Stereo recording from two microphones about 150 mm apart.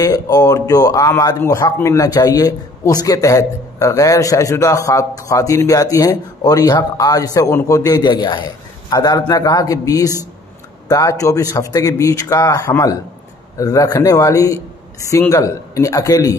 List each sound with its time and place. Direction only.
0.0 s speech: 25° left (ahead or behind)